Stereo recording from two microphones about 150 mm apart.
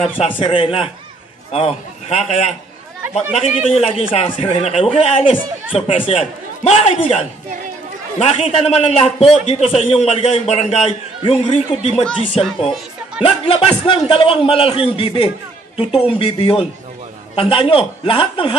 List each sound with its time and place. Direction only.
0.0 s a man's voice: 40° left (ahead or behind)